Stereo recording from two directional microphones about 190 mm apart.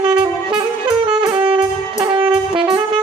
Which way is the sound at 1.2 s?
25° right (ahead or behind).